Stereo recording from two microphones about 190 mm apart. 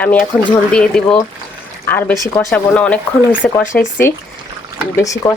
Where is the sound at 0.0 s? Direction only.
10° left (ahead or behind).